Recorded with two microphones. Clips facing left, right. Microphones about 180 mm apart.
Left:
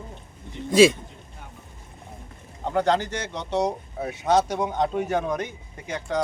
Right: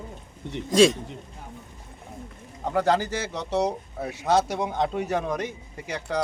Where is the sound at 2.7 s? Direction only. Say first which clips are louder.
Even; 5° right (ahead or behind).